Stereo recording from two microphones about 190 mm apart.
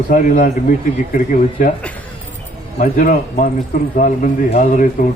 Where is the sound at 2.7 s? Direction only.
45° left (ahead or behind).